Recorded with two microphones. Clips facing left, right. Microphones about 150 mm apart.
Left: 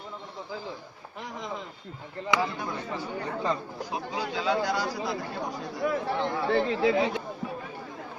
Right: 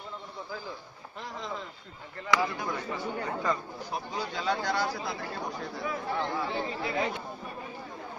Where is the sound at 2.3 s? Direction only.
20° left (ahead or behind).